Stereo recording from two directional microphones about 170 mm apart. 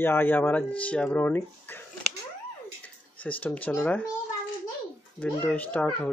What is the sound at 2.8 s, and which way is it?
Speech, 10° left (ahead or behind).